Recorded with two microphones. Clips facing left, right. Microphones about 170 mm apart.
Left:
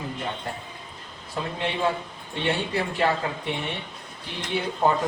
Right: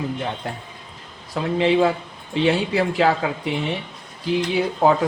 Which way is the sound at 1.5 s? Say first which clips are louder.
Right 9 dB; 90° right.